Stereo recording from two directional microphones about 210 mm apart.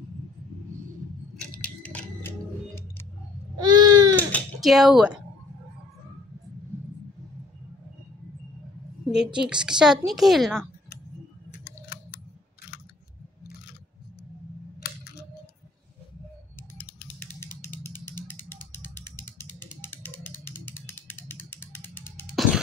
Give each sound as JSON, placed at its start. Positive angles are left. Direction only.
{"t": 1.3, "sound": "a sound", "side_deg": 5}
{"t": 3.6, "sound": "baby cry", "side_deg": -20}
{"t": 4.6, "sound": "a woman's voice", "side_deg": 0}
{"t": 9.1, "sound": "a woman's voice", "side_deg": -5}
{"t": 16.7, "sound": "a sound", "side_deg": 10}
{"t": 22.3, "sound": "music", "side_deg": 0}